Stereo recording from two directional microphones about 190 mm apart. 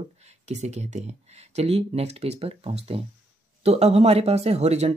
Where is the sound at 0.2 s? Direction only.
35° right (ahead or behind).